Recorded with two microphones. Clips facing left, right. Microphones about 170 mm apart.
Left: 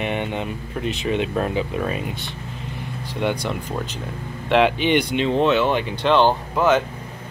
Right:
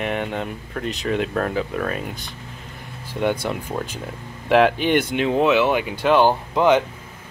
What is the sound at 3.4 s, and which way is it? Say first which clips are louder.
Speech: right 1 dB; 5° right (ahead or behind).